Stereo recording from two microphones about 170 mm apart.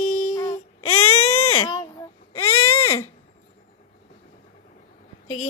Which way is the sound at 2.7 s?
15° left (ahead or behind).